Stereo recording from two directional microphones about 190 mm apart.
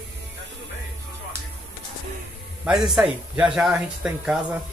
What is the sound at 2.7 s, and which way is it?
Speech, centre (ahead or behind).